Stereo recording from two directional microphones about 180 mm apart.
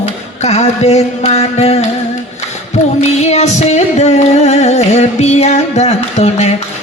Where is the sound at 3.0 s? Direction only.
40° left (ahead or behind).